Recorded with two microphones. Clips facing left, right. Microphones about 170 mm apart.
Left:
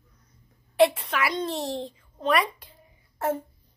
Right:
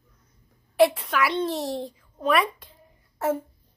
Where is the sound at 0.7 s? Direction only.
Centre (ahead or behind).